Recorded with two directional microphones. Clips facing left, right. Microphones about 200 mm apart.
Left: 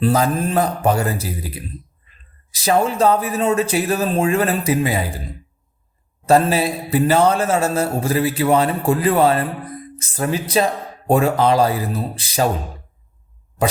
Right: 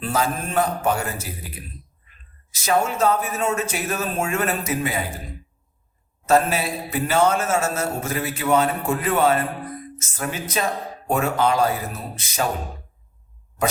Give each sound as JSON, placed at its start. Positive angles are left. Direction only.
{"t": 0.0, "sound": "a man's voice", "side_deg": 35}
{"t": 6.2, "sound": "a man's voice", "side_deg": 35}